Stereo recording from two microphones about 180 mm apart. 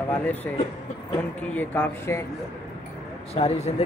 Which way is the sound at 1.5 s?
10° left (ahead or behind).